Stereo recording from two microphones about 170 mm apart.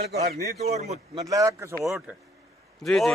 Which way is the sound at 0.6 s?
40° right (ahead or behind).